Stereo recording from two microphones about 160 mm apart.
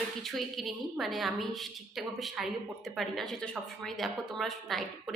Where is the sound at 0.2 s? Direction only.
Centre (ahead or behind).